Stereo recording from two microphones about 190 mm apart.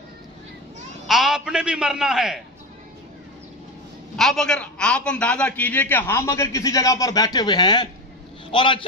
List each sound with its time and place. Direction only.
1.0 s a man's voice: centre (ahead or behind)
4.2 s a man's voice: 5° left (ahead or behind); by 8.8 s 25° left (ahead or behind)